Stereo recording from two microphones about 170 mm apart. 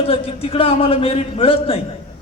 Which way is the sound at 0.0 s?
35° left (ahead or behind).